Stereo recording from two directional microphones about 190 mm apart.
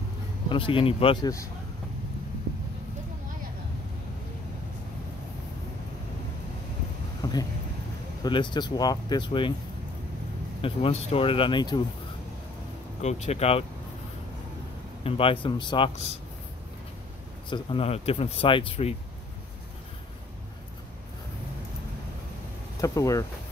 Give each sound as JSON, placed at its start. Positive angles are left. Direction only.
{"t": 0.5, "sound": "speech", "side_deg": 30}
{"t": 8.2, "sound": "speech", "side_deg": 25}
{"t": 10.6, "sound": "speech", "side_deg": 30}
{"t": 13.0, "sound": "speech", "side_deg": 35}
{"t": 15.0, "sound": "speech", "side_deg": 30}
{"t": 17.5, "sound": "speech", "side_deg": 30}
{"t": 22.8, "sound": "speech", "side_deg": 15}